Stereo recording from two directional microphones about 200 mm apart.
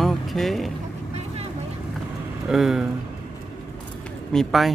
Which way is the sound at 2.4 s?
Centre (ahead or behind).